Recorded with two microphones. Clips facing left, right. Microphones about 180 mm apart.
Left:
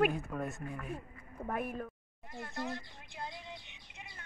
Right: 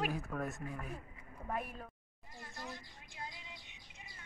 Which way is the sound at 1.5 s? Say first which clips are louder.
Left 4 dB; 55° left (ahead or behind).